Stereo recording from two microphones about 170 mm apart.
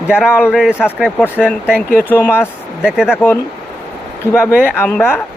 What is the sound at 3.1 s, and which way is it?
A woman's voice, 10° left (ahead or behind).